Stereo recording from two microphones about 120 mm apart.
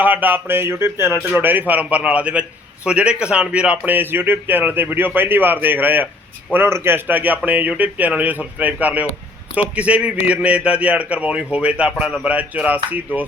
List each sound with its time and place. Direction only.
0.0 s speech: 15° right (ahead or behind)